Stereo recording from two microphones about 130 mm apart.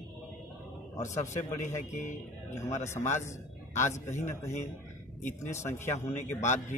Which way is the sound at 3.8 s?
20° left (ahead or behind).